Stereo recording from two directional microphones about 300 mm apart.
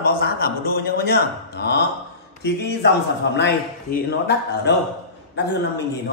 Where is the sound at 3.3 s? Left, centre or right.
Left.